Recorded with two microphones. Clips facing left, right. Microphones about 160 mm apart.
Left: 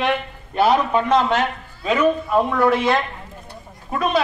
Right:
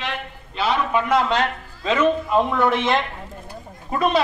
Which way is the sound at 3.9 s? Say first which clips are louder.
Right 1 dB; 5° left (ahead or behind).